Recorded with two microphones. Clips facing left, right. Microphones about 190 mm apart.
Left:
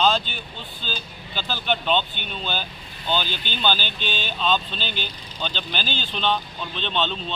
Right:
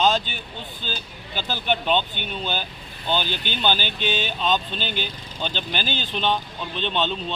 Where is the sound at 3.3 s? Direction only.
50° right (ahead or behind).